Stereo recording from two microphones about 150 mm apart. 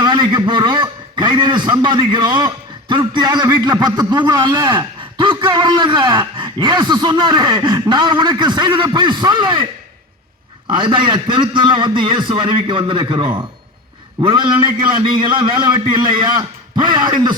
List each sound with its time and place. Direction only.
0.0 s a man's voice: 30° right (ahead or behind)
10.7 s a man's voice: 35° right (ahead or behind)